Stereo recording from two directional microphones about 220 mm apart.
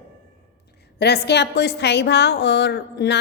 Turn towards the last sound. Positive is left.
turn(degrees=50)  # may be behind; listen again after turning